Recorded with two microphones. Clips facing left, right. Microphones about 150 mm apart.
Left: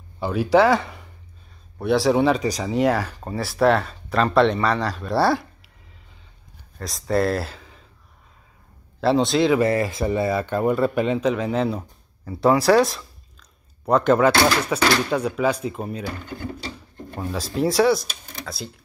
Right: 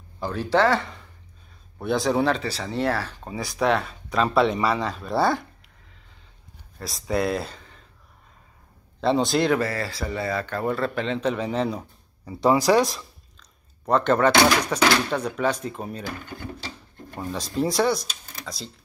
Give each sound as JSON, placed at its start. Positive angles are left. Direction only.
{"t": 0.2, "sound": "speech", "side_deg": 10}
{"t": 3.3, "sound": "speech", "side_deg": 0}
{"t": 6.8, "sound": "speech", "side_deg": 0}
{"t": 9.0, "sound": "speech", "side_deg": 0}
{"t": 9.6, "sound": "speech", "side_deg": 20}
{"t": 17.2, "sound": "speech", "side_deg": 0}